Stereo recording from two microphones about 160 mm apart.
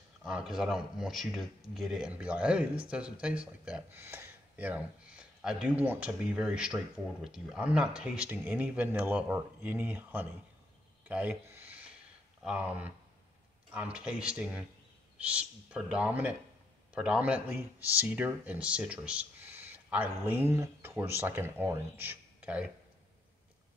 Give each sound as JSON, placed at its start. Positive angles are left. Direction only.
{"t": 0.2, "sound": "a man's voice", "side_deg": -5}
{"t": 11.1, "sound": "a sound", "side_deg": -10}
{"t": 12.4, "sound": "a man's voice", "side_deg": -10}